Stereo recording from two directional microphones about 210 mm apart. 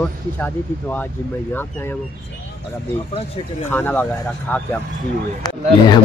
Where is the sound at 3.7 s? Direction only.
10° left (ahead or behind).